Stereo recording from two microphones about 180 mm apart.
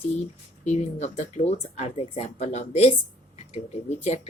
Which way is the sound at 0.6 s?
40° left (ahead or behind).